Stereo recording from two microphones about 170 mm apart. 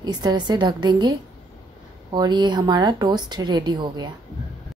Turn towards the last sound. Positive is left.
turn(degrees=-25)  # may be behind; listen again after turning